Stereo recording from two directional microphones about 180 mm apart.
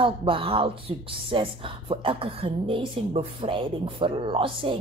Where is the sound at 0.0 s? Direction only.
30° right (ahead or behind).